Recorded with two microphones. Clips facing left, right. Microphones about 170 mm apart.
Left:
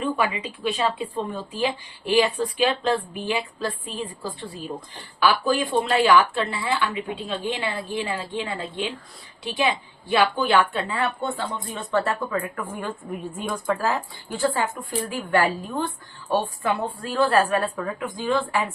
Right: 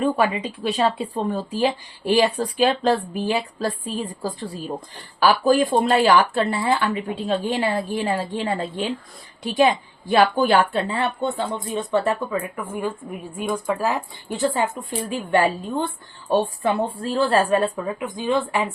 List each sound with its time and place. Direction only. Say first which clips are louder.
0.0 s speech: right 4 dB; 40° right (ahead or behind)
5.2 s a woman's voice: right 4 dB; 40° right (ahead or behind); by 18.6 s 20° right (ahead or behind)